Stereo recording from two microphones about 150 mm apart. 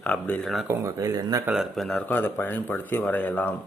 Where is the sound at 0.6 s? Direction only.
20° right (ahead or behind).